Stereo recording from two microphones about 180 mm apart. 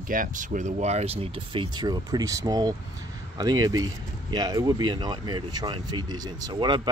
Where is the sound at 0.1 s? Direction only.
45° right (ahead or behind).